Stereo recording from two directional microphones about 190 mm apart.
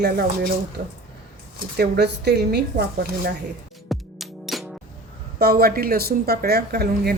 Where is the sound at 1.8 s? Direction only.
60° right (ahead or behind).